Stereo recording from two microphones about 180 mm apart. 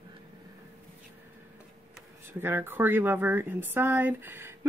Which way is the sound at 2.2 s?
10° right (ahead or behind).